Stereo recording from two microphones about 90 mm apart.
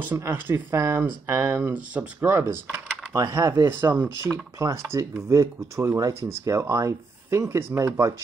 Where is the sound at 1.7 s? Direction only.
15° right (ahead or behind).